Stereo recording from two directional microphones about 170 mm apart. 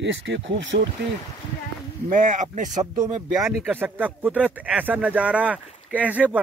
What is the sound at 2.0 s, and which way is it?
Speech, 50° right (ahead or behind).